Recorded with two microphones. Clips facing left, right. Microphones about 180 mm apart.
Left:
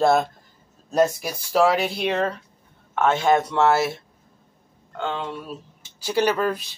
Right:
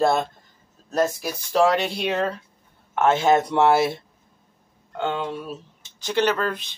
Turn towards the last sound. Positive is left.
turn(degrees=10)  # may be behind; listen again after turning